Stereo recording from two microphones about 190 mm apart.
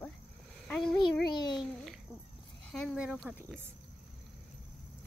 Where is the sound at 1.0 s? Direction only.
25° left (ahead or behind).